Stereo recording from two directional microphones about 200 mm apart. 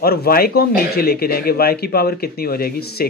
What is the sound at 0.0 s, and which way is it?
Speech, 50° left (ahead or behind).